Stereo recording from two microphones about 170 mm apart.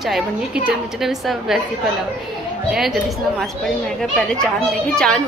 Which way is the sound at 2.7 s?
Centre (ahead or behind).